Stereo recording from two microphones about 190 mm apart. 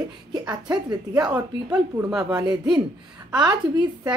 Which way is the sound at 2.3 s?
20° right (ahead or behind).